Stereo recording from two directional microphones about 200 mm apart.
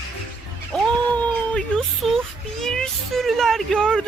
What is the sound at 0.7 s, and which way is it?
Music, 5° left (ahead or behind).